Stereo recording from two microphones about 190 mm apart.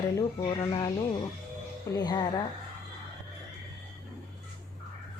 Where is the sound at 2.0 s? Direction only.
20° left (ahead or behind).